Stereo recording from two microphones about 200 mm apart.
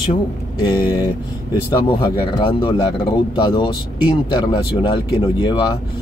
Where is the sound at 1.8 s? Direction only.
25° left (ahead or behind).